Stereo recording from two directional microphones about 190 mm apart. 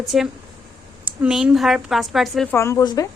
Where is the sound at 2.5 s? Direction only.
15° left (ahead or behind).